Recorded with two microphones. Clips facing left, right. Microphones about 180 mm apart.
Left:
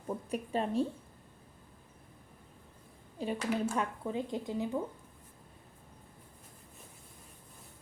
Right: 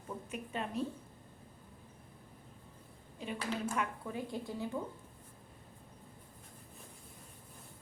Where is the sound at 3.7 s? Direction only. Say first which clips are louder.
Left 4 dB; 20° left (ahead or behind).